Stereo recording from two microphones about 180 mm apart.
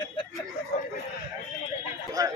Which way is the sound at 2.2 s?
20° right (ahead or behind).